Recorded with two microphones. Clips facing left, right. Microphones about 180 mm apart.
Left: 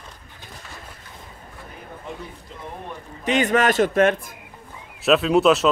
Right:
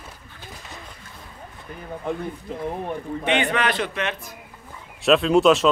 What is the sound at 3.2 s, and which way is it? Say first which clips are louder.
A man's voice: left 4 dB; 40° left (ahead or behind).